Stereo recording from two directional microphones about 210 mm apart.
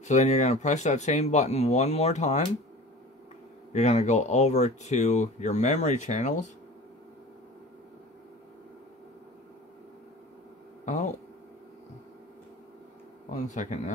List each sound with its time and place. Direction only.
0.0 s speech: 35° left (ahead or behind)
3.7 s speech: 30° left (ahead or behind)
13.5 s speech: 35° left (ahead or behind)